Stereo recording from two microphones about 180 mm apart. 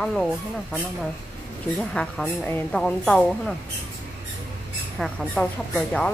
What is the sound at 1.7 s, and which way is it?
Speech, 5° left (ahead or behind).